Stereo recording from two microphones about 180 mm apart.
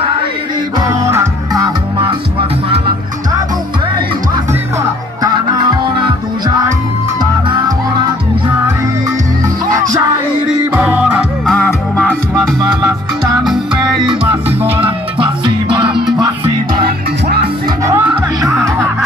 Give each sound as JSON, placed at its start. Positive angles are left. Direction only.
{"t": 0.7, "sound": "music", "side_deg": -15}
{"t": 7.2, "sound": "music", "side_deg": -25}
{"t": 10.7, "sound": "music", "side_deg": -10}
{"t": 11.4, "sound": "music", "side_deg": 5}
{"t": 15.1, "sound": "music", "side_deg": -30}
{"t": 17.8, "sound": "music", "side_deg": -15}